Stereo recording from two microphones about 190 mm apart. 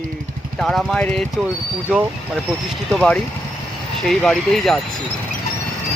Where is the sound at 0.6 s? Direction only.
5° left (ahead or behind).